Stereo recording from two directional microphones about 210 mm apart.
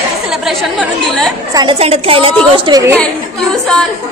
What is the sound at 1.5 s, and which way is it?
Speech, 20° right (ahead or behind).